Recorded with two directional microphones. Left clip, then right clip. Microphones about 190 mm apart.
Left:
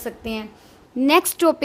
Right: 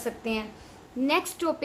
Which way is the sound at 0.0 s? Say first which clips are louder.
Left 2 dB; 40° left (ahead or behind).